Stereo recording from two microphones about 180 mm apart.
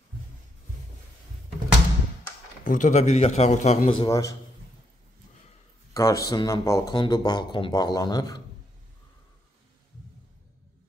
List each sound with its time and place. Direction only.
2.6 s a man's voice: 45° left (ahead or behind)
4.1 s speech: 20° left (ahead or behind)
5.9 s speech: 20° left (ahead or behind)